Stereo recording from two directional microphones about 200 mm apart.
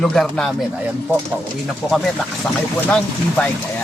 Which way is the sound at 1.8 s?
Centre (ahead or behind).